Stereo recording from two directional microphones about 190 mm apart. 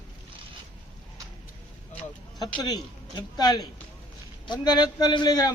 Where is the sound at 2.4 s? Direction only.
20° left (ahead or behind).